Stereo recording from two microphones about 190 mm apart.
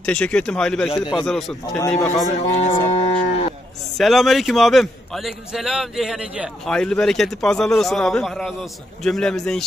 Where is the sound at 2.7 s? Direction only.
35° left (ahead or behind).